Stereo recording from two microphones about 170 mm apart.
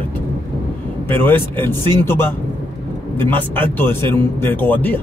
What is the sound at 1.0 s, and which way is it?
Speech, 10° left (ahead or behind).